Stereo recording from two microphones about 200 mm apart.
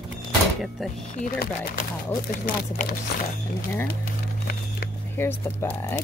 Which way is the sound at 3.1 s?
50° left (ahead or behind).